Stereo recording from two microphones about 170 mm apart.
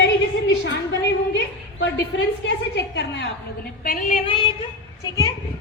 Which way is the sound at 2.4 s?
90° left.